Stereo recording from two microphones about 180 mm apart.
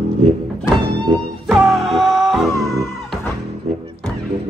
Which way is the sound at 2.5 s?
15° left (ahead or behind).